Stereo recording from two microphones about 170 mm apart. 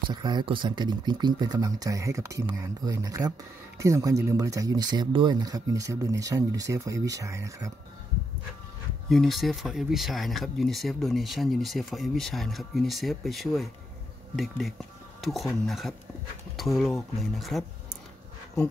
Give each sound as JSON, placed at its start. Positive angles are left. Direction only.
{"t": 0.1, "sound": "speech", "side_deg": -25}
{"t": 9.1, "sound": "speech", "side_deg": 0}